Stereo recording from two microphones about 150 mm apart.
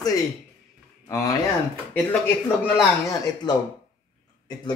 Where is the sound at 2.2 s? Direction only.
15° left (ahead or behind).